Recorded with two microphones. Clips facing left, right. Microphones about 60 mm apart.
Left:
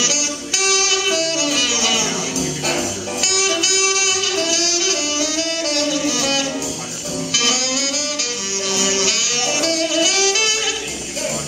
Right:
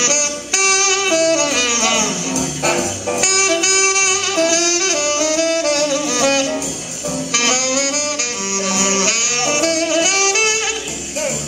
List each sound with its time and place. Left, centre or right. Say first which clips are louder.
0.0 s music: right 3 dB; right
3.2 s saxophone: right 3 dB; right
8.7 s music: right 1 dB; right